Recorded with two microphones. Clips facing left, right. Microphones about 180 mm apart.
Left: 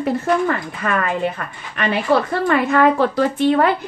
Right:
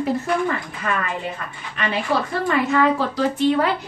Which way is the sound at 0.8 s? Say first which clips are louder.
Left 5 dB; 55° left (ahead or behind).